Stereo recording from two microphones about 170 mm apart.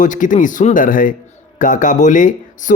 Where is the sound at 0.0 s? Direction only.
50° left (ahead or behind).